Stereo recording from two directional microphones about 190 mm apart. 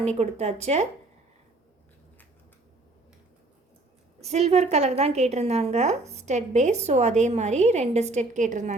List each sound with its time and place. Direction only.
0.0 s a woman's voice: 35° right (ahead or behind)
4.2 s a woman's voice: 35° right (ahead or behind)